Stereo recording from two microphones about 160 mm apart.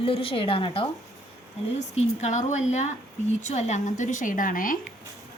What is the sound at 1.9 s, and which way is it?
A woman's voice, 50° left (ahead or behind).